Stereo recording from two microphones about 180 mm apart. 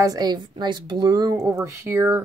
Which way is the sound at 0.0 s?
20° right (ahead or behind).